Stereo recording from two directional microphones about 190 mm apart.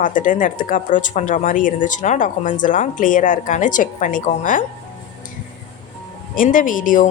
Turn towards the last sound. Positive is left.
turn(degrees=45)  # may be behind; listen again after turning